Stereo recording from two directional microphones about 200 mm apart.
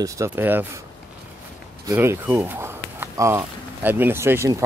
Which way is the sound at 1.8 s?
15° right (ahead or behind).